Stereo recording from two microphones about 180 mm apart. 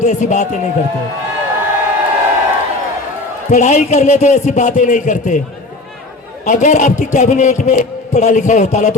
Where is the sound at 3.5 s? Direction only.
40° left (ahead or behind).